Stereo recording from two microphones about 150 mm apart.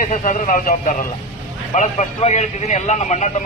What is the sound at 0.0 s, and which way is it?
Speech, 60° left (ahead or behind).